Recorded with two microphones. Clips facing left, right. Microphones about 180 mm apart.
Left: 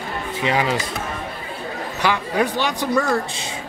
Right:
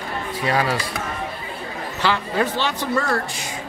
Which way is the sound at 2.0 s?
15° left (ahead or behind).